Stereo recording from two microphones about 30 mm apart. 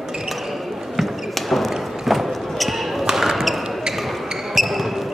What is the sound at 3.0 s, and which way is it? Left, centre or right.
Basketball bounce, centre.